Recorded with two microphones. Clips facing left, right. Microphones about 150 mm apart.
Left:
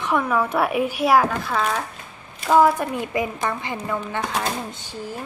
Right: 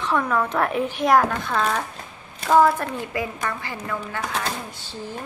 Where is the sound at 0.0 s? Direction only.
10° left (ahead or behind).